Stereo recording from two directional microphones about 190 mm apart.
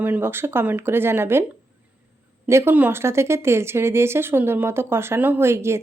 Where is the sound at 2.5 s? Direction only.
10° right (ahead or behind).